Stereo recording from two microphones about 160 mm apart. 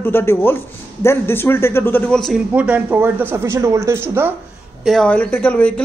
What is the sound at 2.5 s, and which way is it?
Speech, 10° right (ahead or behind).